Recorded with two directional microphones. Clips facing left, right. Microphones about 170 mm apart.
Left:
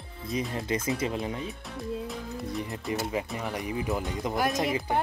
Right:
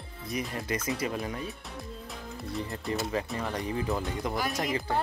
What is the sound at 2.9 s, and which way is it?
Speech, 15° left (ahead or behind).